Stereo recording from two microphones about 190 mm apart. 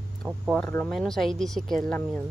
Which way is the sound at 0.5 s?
5° left (ahead or behind).